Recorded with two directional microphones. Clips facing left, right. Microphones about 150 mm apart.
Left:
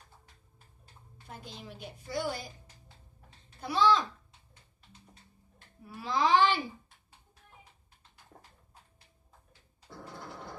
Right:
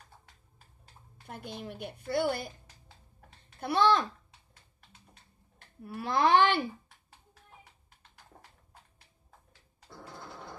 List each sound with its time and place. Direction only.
1.2 s speech: 60° right (ahead or behind)
5.9 s speech: 60° right (ahead or behind)
10.0 s a sound: 15° left (ahead or behind)